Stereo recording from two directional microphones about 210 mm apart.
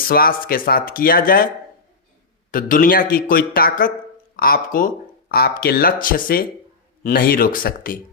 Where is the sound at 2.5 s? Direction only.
40° left (ahead or behind).